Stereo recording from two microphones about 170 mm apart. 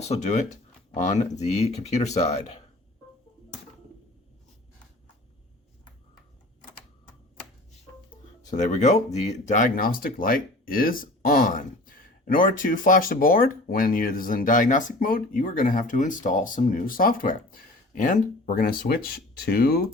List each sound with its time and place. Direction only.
0.0 s speech: 40° left (ahead or behind)
8.4 s speech: 45° left (ahead or behind); by 19.8 s 60° left (ahead or behind)